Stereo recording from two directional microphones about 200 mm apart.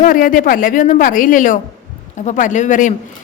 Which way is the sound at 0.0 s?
45° left (ahead or behind).